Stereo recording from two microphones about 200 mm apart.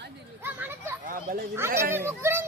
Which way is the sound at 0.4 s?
10° right (ahead or behind).